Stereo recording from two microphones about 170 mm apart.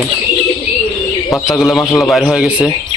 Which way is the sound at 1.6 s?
Centre (ahead or behind).